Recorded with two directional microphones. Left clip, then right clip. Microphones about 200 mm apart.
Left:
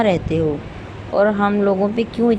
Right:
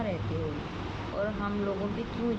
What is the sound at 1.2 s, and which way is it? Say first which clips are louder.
Speech: left 17 dB; 45° left (ahead or behind).